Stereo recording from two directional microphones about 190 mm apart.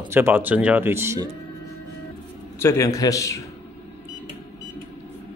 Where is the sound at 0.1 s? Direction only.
10° right (ahead or behind).